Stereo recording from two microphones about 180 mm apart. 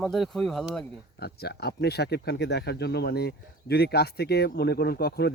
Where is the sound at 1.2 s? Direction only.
65° left (ahead or behind).